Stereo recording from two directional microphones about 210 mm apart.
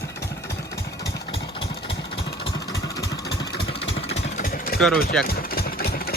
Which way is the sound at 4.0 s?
30° left (ahead or behind).